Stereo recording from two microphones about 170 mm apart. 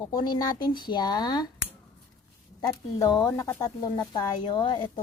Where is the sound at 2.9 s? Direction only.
20° left (ahead or behind).